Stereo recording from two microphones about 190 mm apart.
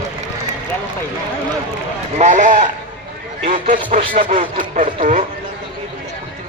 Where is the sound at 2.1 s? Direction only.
40° right (ahead or behind).